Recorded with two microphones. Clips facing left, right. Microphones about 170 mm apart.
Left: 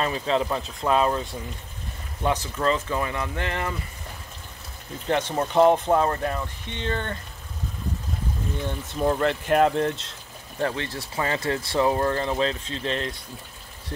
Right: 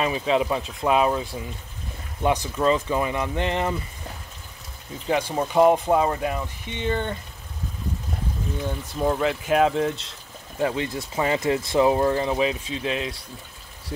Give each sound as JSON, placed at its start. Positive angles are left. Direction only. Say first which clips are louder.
{"t": 0.0, "sound": "speech", "louder": "right 2 dB", "side_deg": -10}
{"t": 5.0, "sound": "speech", "louder": "right 1 dB", "side_deg": -5}
{"t": 8.6, "sound": "speech", "louder": "even", "side_deg": -5}
{"t": 10.6, "sound": "speech", "louder": "right 3 dB", "side_deg": -15}